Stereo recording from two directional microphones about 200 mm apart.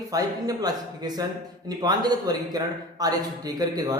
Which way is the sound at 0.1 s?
20° right (ahead or behind).